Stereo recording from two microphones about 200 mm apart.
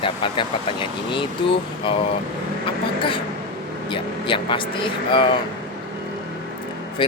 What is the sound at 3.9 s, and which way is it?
Speech, 25° left (ahead or behind).